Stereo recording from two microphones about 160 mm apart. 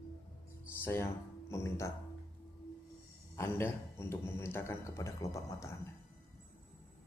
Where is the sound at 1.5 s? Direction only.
15° left (ahead or behind).